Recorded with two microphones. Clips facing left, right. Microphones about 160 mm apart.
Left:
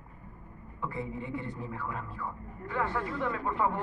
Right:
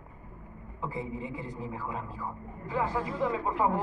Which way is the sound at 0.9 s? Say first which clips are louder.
Even; 90° right.